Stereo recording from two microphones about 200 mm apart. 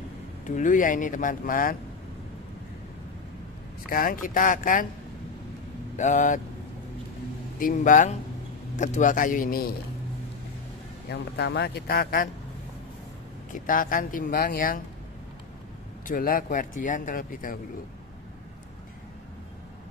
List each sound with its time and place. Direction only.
0.5 s speech: 40° left (ahead or behind)
3.9 s speech: 45° left (ahead or behind)
5.9 s speech: 40° left (ahead or behind)
7.5 s speech: 40° left (ahead or behind)
11.1 s speech: 55° left (ahead or behind)
13.5 s speech: 45° left (ahead or behind)
16.1 s speech: 45° left (ahead or behind)